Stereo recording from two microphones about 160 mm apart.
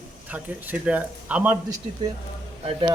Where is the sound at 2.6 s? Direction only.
35° right (ahead or behind).